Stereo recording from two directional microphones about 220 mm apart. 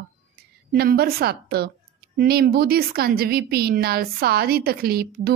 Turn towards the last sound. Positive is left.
turn(degrees=-45)  # may be behind; listen again after turning